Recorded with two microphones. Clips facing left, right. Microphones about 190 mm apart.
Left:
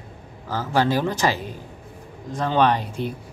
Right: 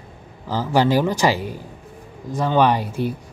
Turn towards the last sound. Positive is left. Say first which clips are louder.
# right 2 dB
turn(degrees=-10)  # may be behind; listen again after turning